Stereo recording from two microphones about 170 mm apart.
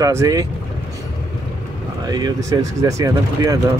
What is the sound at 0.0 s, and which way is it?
Speech, 20° right (ahead or behind).